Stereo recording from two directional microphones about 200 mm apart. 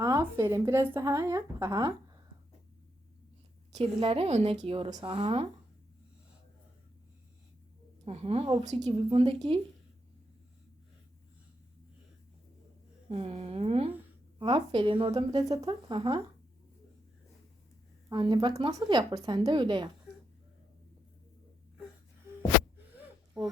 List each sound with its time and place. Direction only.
0.0 s a woman's voice: 15° right (ahead or behind)
3.7 s speech: 30° right (ahead or behind)
8.0 s a woman's voice: 30° right (ahead or behind)
13.1 s speech: 30° right (ahead or behind)
18.1 s speech: 25° right (ahead or behind)